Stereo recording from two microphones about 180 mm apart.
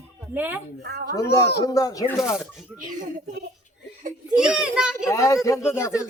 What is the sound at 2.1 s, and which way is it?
Speech, centre (ahead or behind).